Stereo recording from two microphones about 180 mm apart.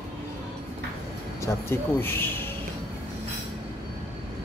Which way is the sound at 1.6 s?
15° left (ahead or behind).